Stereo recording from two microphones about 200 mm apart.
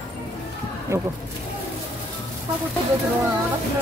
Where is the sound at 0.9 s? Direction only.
15° right (ahead or behind).